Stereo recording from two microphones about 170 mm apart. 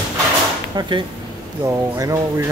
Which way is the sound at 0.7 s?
30° right (ahead or behind).